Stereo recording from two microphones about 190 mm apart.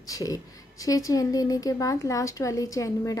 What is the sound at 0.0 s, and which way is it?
A woman's voice, 20° left (ahead or behind).